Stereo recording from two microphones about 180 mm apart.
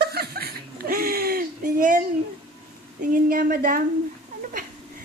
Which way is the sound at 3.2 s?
50° right (ahead or behind).